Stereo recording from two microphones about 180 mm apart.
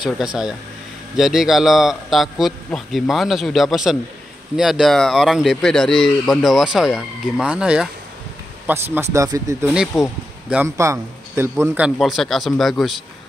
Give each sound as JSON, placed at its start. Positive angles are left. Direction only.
{"t": 0.0, "sound": "a man's voice", "side_deg": -5}
{"t": 8.9, "sound": "speech", "side_deg": -15}
{"t": 9.9, "sound": "a man's voice", "side_deg": 0}
{"t": 10.5, "sound": "a man's voice", "side_deg": -10}